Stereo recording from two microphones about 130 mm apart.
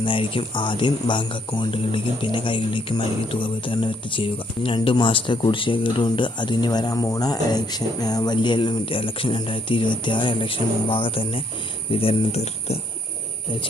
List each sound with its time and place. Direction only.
0.0 s speech: 40° left (ahead or behind)